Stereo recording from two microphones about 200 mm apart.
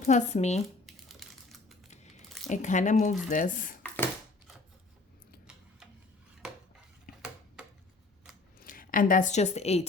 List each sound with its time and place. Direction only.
0.0 s speech: 35° left (ahead or behind)
0.9 s typing: centre (ahead or behind)
2.5 s speech: 35° left (ahead or behind)
8.6 s speech: 45° left (ahead or behind)